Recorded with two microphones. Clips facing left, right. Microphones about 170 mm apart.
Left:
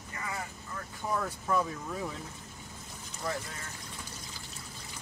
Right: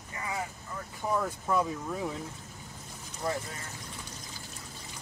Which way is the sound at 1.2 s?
10° right (ahead or behind).